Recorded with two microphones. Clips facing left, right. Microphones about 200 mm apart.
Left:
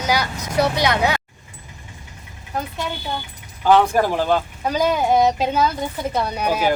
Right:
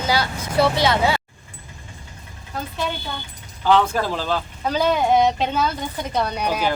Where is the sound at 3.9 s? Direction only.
15° left (ahead or behind).